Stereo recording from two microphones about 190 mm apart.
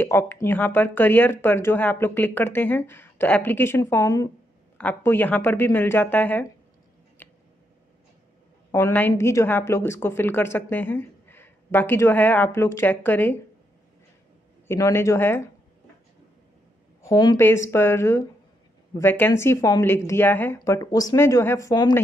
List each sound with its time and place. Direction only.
0.0 s a woman's voice: 10° left (ahead or behind)
7.2 s a sound: 10° left (ahead or behind)
8.7 s a woman's voice: 10° left (ahead or behind)
14.7 s a woman's voice: 15° left (ahead or behind)
17.0 s a woman's voice: 20° left (ahead or behind)